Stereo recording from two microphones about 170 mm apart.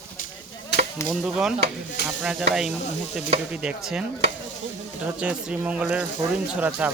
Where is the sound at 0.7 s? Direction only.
80° left.